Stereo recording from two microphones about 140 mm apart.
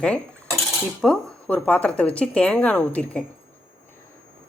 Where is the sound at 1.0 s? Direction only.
5° left (ahead or behind).